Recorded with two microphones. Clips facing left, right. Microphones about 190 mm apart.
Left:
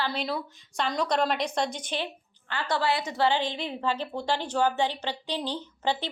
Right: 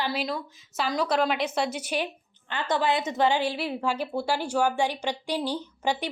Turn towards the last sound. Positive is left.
turn(degrees=-10)  # may be behind; listen again after turning